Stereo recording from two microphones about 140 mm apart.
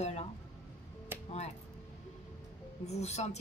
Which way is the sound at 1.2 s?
50° left (ahead or behind).